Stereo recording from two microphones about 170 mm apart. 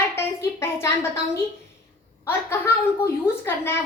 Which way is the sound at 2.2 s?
15° left (ahead or behind).